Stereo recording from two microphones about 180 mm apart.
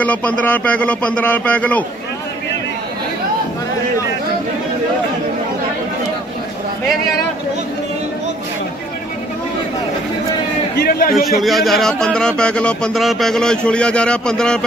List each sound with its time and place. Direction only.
0.0 s speech: 10° left (ahead or behind)
10.8 s a man's voice: 55° left (ahead or behind)
11.2 s speech: centre (ahead or behind)